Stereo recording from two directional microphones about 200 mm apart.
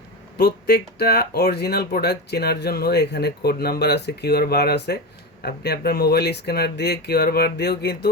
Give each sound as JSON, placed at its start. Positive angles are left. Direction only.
{"t": 0.3, "sound": "speech", "side_deg": 50}